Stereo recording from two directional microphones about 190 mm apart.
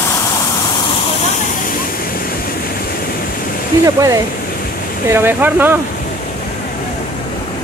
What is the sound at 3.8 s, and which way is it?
Speech, 15° right (ahead or behind).